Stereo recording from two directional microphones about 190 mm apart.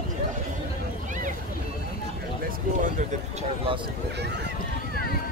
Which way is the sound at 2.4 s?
45° right (ahead or behind).